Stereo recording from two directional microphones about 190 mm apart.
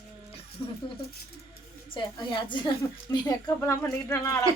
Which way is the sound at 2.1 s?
25° left (ahead or behind).